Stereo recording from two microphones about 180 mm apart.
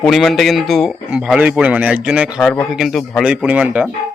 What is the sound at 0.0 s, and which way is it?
Speech, centre (ahead or behind).